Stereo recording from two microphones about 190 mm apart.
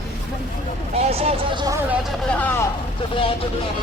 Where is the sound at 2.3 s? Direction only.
10° left (ahead or behind).